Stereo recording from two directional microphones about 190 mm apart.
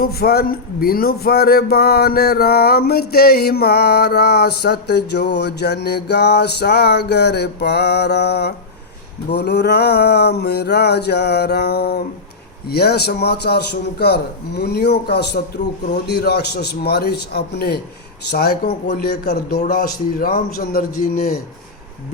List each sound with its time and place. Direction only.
0.0 s a man's voice: 55° left (ahead or behind)